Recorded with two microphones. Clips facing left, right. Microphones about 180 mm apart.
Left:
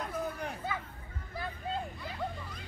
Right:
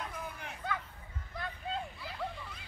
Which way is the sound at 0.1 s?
40° left (ahead or behind).